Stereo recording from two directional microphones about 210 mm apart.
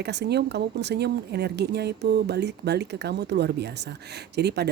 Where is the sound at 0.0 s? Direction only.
55° right (ahead or behind).